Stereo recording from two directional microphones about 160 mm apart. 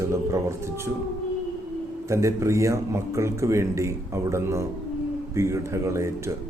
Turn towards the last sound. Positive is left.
turn(degrees=-20)  # may be behind; listen again after turning